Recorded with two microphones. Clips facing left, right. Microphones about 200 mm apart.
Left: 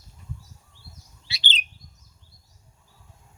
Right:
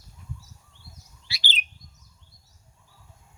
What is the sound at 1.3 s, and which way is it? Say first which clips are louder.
Bird: left 1 dB; 20° left (ahead or behind).